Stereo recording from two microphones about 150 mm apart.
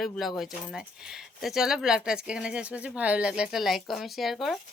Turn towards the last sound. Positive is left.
turn(degrees=0)  # may be behind; listen again after turning